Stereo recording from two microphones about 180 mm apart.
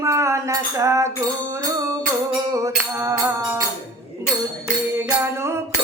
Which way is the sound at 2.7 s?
15° right (ahead or behind).